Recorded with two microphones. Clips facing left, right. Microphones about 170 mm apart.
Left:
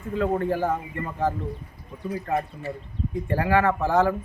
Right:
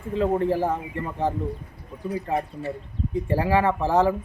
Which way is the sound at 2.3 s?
25° right (ahead or behind).